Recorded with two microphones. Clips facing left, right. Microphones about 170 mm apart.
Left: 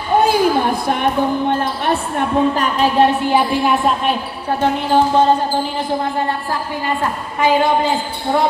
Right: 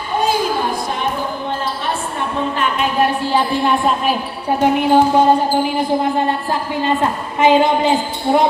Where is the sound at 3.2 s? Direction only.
15° left (ahead or behind).